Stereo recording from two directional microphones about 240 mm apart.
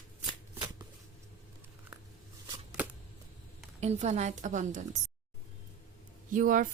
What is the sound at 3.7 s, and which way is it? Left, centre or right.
A woman's voice, right.